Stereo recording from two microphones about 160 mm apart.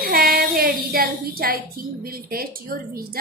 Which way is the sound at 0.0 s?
70° right (ahead or behind).